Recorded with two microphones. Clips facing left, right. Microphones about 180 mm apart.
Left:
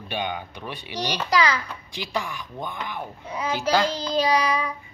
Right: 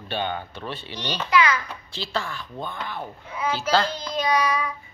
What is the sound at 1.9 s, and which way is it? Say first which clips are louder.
Speech: even; 15° left (ahead or behind).